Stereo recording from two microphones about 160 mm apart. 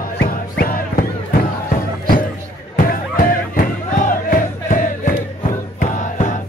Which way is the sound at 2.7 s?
60° left (ahead or behind).